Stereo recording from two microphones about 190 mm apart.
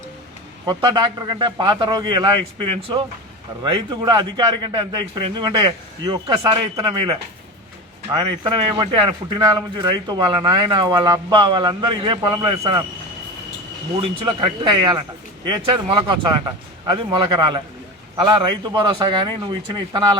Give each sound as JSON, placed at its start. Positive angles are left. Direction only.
{"t": 0.6, "sound": "speech", "side_deg": -20}
{"t": 14.3, "sound": "speech", "side_deg": -25}